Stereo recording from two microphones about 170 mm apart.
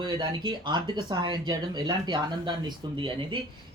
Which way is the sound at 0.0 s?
25° right (ahead or behind).